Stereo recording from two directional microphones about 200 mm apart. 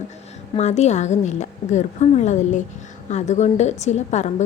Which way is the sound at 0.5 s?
35° left (ahead or behind).